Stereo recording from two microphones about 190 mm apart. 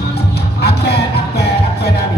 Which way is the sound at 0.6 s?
60° left (ahead or behind).